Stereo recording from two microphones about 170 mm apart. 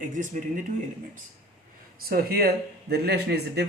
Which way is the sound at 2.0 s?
65° right (ahead or behind).